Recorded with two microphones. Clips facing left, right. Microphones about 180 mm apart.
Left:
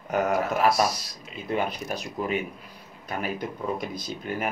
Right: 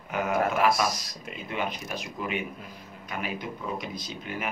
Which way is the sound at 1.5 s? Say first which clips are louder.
Left 5 dB; 40° left (ahead or behind).